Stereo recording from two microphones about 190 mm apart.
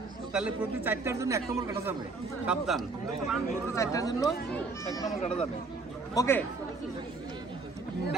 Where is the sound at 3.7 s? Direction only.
15° left (ahead or behind).